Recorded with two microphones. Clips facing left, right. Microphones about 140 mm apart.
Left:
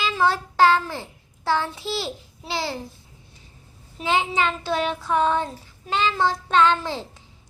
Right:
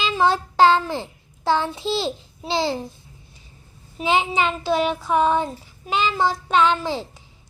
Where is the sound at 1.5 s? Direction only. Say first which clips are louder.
Right 3 dB; 20° right (ahead or behind).